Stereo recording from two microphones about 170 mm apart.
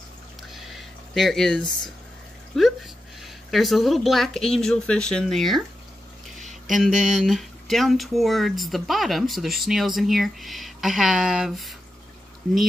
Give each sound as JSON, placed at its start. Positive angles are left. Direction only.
{"t": 0.5, "sound": "a sound", "side_deg": 0}
{"t": 2.5, "sound": "speech", "side_deg": 0}
{"t": 7.0, "sound": "speech", "side_deg": 0}